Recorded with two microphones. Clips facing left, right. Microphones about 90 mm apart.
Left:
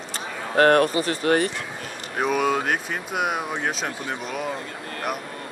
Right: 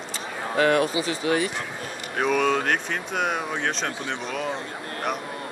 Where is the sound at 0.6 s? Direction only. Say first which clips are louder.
Left 4 dB; 50° left (ahead or behind).